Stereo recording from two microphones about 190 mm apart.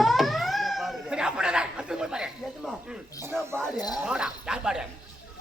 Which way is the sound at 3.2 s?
15° right (ahead or behind).